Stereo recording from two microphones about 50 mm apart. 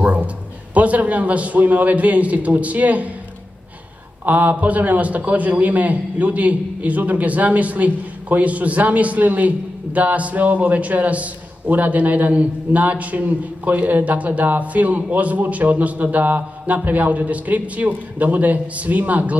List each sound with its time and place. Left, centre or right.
0.0 s a sound: right
0.7 s a man's voice: right
4.3 s a man's voice: right